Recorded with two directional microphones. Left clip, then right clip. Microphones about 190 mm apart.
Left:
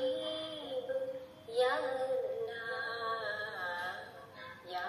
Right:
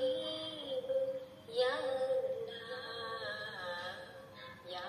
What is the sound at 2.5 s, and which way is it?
Music, 25° left (ahead or behind).